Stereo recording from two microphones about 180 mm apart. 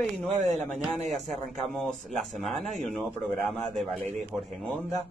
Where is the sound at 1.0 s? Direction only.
40° right (ahead or behind).